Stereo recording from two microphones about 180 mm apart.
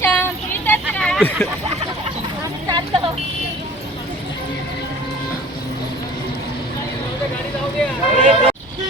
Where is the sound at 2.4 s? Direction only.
25° right (ahead or behind).